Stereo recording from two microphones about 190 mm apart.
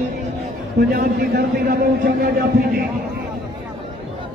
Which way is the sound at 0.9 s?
55° right (ahead or behind).